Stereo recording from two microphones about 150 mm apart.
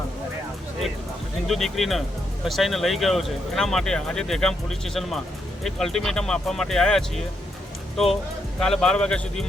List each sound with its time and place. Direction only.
1.5 s speech: centre (ahead or behind)
8.5 s speech: 5° left (ahead or behind)